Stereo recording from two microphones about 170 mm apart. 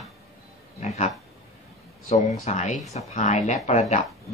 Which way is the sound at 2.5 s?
45° left (ahead or behind).